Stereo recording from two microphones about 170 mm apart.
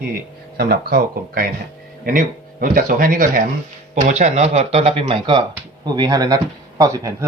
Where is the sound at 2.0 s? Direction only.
55° right (ahead or behind).